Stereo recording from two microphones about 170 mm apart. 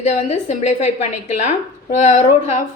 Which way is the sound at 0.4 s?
40° left (ahead or behind).